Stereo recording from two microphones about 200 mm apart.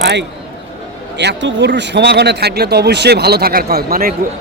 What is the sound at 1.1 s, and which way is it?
Speech, 65° right (ahead or behind).